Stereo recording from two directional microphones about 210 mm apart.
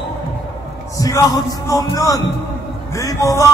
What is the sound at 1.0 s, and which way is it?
A man's voice, 15° left (ahead or behind).